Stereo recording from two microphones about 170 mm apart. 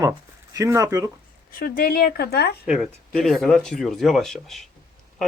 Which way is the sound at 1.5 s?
60° left (ahead or behind).